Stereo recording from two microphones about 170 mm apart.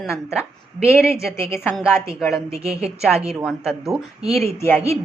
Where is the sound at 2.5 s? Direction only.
35° right (ahead or behind).